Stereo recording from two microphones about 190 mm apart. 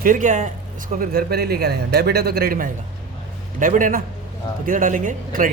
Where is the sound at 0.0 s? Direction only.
45° right (ahead or behind).